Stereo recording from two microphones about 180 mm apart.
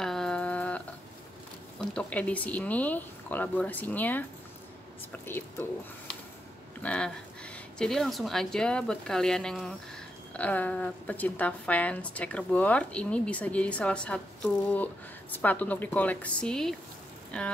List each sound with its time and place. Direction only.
0.0 s a sound: 5° left (ahead or behind)
2.0 s a woman's voice: 5° left (ahead or behind)
5.2 s a woman's voice: 10° left (ahead or behind)
6.8 s a woman's voice: 5° left (ahead or behind)